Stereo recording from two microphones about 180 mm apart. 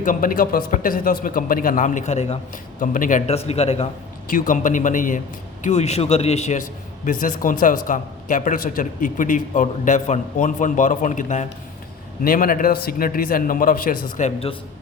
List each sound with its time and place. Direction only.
0.0 s a man's voice: 50° left (ahead or behind)
4.3 s a man's voice: 50° left (ahead or behind)